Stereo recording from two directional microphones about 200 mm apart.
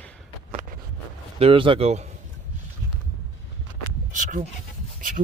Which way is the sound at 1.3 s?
25° right (ahead or behind).